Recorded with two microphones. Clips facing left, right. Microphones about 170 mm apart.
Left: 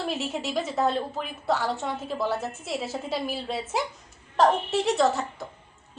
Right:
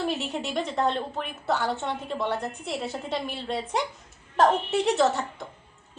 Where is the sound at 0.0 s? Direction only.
Centre (ahead or behind).